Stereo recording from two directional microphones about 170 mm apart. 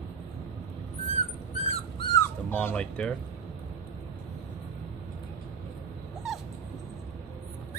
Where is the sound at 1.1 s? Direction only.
40° left (ahead or behind).